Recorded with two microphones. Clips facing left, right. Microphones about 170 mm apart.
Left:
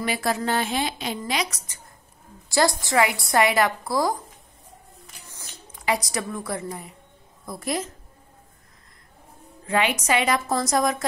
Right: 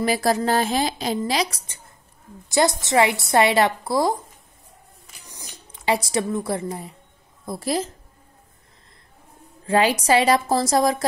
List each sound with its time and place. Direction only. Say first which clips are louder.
0.0 s a woman's voice: right 5 dB; 35° right (ahead or behind)
2.8 s a woman's voice: right 3 dB; 25° right (ahead or behind)
5.2 s a sound: right 4 dB; 15° right (ahead or behind)
5.9 s a woman's voice: right 4 dB; 25° right (ahead or behind)
9.7 s a woman's voice: right 5 dB; 35° right (ahead or behind)